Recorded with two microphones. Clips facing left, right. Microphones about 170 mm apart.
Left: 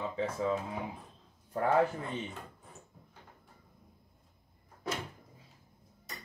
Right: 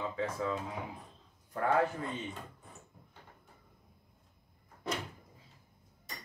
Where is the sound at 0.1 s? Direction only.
25° left (ahead or behind).